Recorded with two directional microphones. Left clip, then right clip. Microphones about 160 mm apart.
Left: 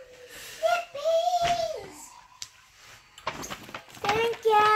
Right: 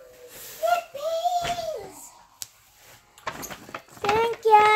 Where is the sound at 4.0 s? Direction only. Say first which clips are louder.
Right 3 dB; 30° right (ahead or behind).